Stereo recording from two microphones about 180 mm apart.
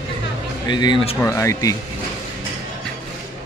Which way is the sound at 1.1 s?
15° left (ahead or behind).